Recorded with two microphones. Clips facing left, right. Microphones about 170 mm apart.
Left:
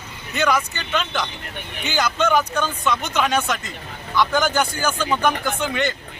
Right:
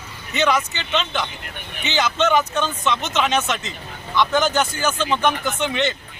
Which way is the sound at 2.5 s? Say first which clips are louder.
Even; 20° right (ahead or behind).